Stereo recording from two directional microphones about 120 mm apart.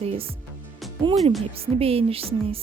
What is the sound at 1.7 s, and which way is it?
Speech, 55° right (ahead or behind).